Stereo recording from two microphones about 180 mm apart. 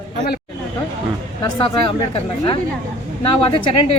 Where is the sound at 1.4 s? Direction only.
25° left (ahead or behind).